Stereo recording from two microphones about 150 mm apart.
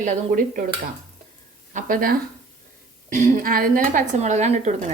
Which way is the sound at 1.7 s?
70° right (ahead or behind).